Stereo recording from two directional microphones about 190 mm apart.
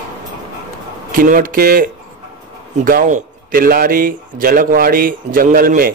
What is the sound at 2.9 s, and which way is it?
Speech, 45° right (ahead or behind).